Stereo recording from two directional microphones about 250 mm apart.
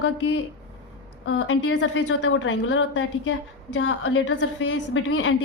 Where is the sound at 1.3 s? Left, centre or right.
Left.